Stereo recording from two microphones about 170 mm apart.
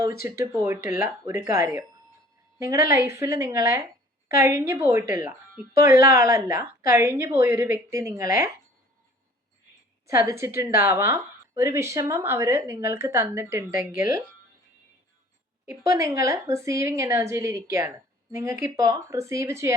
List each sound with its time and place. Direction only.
0.0 s speech: 15° right (ahead or behind)
10.1 s speech: 15° right (ahead or behind)
15.9 s speech: 15° right (ahead or behind)